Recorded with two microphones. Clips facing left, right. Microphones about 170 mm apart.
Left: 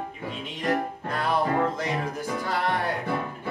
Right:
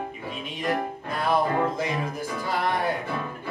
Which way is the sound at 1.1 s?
10° right (ahead or behind).